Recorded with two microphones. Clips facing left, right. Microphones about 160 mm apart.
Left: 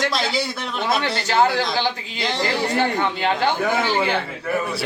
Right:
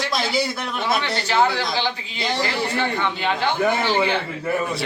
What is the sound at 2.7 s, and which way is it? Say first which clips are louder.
Speech: left 2 dB; 40° left (ahead or behind).